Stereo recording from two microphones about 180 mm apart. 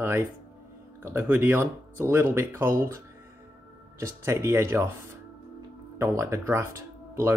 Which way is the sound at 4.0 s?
15° right (ahead or behind).